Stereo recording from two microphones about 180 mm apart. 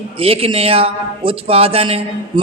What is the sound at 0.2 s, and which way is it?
A man's voice, 30° right (ahead or behind).